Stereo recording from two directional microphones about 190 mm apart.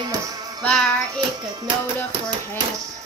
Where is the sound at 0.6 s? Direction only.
5° left (ahead or behind).